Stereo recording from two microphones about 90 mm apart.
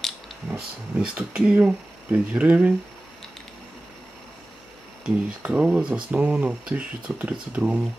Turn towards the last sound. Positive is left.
turn(degrees=-15)  # may be behind; listen again after turning